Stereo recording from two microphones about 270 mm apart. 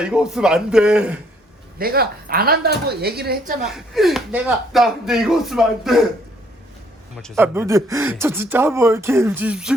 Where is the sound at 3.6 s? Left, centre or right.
Centre.